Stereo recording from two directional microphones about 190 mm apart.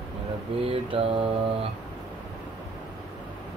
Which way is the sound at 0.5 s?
30° right (ahead or behind).